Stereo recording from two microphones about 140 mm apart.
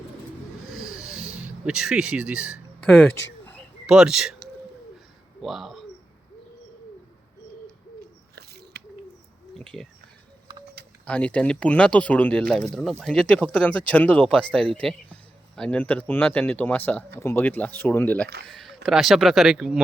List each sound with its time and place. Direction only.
0.9 s snort: 5° right (ahead or behind)
1.4 s speech: 5° right (ahead or behind)
2.8 s a sound: 10° left (ahead or behind)
3.8 s speech: 5° right (ahead or behind)
5.4 s speech: centre (ahead or behind)
9.6 s a sound: 5° left (ahead or behind)
11.0 s speech: 10° left (ahead or behind)